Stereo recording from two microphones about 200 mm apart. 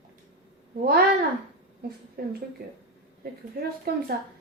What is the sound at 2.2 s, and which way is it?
Speech, 50° right (ahead or behind).